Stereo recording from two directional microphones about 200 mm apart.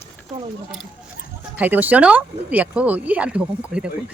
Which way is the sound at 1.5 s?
10° right (ahead or behind).